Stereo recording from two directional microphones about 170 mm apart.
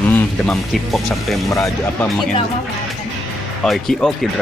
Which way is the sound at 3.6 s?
Centre (ahead or behind).